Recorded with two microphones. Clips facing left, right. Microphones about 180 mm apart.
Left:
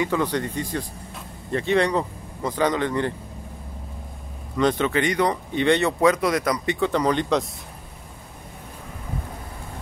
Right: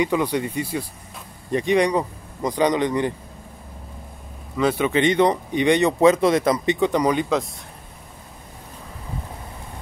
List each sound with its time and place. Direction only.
0.0 s speech: 15° right (ahead or behind)
4.6 s speech: 10° right (ahead or behind)